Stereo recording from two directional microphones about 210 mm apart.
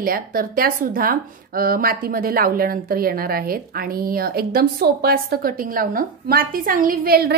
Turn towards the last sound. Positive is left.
turn(degrees=-45)  # may be behind; listen again after turning